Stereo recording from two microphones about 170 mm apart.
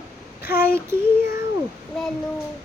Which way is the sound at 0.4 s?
65° left (ahead or behind).